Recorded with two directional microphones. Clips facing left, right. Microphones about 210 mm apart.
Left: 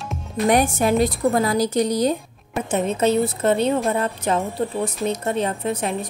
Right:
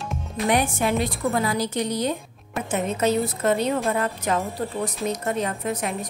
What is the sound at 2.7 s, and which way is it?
A woman's voice, 30° left (ahead or behind).